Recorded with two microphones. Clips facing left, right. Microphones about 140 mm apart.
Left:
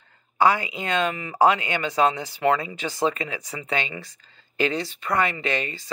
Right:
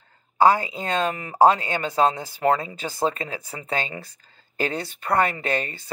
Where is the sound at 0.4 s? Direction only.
45° right (ahead or behind).